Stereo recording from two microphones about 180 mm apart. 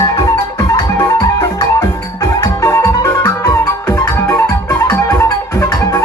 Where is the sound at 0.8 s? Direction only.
20° left (ahead or behind).